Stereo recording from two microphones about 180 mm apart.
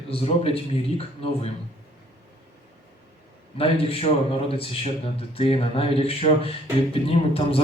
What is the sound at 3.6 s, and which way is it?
A man's voice, 30° left (ahead or behind).